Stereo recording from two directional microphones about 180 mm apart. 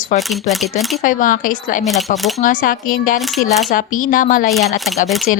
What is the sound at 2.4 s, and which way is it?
Speech, 50° left (ahead or behind).